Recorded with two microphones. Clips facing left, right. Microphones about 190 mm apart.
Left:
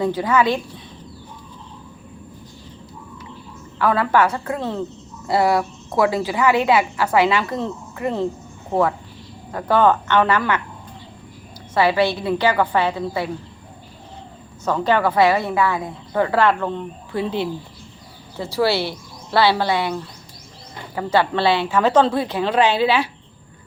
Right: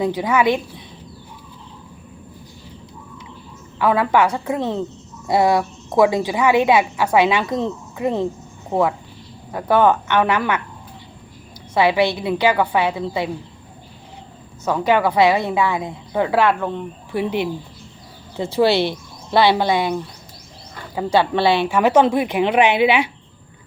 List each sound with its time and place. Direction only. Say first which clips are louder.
0.0 s a woman's voice: right 1 dB; 15° right (ahead or behind)
3.8 s a woman's voice: right 1 dB; 15° right (ahead or behind)
9.5 s a woman's voice: right 1 dB; 10° right (ahead or behind)
11.7 s a woman's voice: right 1 dB; 15° right (ahead or behind)
14.6 s a woman's voice: right 1 dB; 10° right (ahead or behind)